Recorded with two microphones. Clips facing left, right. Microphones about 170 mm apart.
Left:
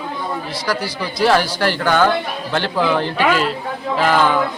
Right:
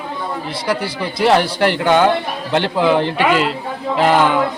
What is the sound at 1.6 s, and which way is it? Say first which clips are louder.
Speech: right 3 dB; 25° right (ahead or behind).